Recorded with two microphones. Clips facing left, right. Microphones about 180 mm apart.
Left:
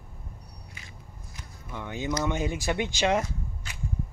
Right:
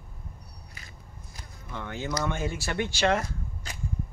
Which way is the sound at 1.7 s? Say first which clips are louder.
Left 2 dB; 15° left (ahead or behind).